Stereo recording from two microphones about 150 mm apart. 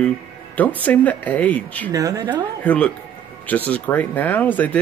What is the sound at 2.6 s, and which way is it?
Speech, 10° left (ahead or behind).